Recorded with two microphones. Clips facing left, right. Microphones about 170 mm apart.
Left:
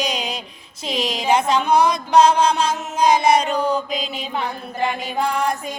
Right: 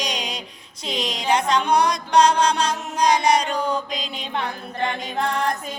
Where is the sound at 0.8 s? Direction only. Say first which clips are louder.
Left 3 dB; 5° left (ahead or behind).